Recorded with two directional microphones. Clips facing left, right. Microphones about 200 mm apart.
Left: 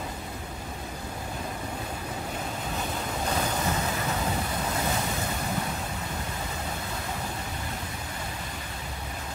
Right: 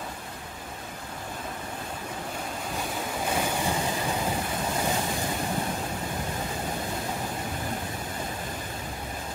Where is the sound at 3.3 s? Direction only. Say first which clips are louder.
Right 1 dB; 10° right (ahead or behind).